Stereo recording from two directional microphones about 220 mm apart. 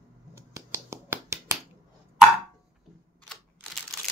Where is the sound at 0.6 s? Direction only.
10° right (ahead or behind).